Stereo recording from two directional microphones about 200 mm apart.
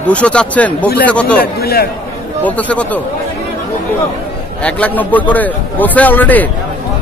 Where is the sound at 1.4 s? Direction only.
50° left (ahead or behind).